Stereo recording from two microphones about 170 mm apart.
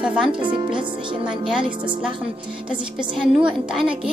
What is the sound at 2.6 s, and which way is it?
A woman's voice, 5° right (ahead or behind).